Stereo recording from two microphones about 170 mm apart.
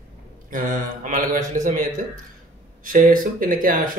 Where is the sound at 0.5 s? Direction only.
50° right (ahead or behind).